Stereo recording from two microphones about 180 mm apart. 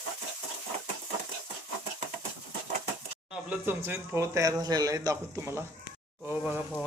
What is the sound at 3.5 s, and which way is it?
Speech, 15° right (ahead or behind).